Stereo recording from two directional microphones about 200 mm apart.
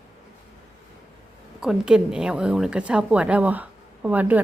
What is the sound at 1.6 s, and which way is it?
A woman's voice, 5° right (ahead or behind).